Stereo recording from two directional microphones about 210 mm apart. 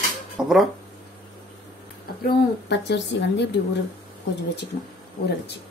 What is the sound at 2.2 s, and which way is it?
A woman's voice, 55° left (ahead or behind).